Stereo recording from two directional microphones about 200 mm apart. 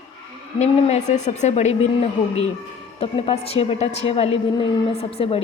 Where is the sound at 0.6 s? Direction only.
35° left (ahead or behind).